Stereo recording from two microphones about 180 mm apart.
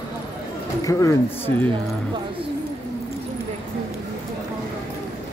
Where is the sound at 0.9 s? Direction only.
20° left (ahead or behind).